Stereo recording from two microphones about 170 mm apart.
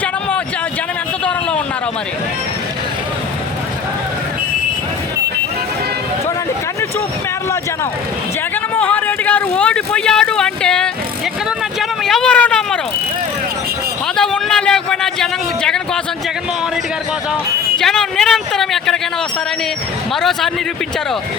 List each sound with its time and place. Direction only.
1.2 s vehicle: 5° left (ahead or behind)
8.8 s a sound: 10° left (ahead or behind)
11.8 s vehicle: centre (ahead or behind)
14.2 s a sound: 5° left (ahead or behind)
17.7 s speech: 5° left (ahead or behind)
20.1 s speech: centre (ahead or behind)